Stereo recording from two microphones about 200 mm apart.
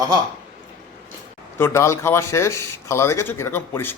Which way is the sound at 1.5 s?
10° left (ahead or behind).